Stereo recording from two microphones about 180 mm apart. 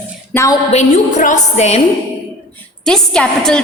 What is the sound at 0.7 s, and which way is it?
A woman's voice, 40° left (ahead or behind).